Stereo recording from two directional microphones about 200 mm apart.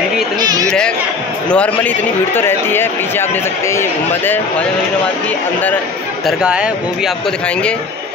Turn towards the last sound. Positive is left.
turn(degrees=-5)  # may be behind; listen again after turning